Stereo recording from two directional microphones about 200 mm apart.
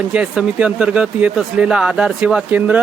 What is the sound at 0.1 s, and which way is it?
Speech, 5° right (ahead or behind).